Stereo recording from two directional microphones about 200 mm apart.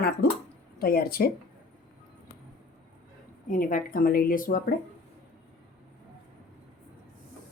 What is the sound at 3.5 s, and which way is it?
Speech, 40° left (ahead or behind).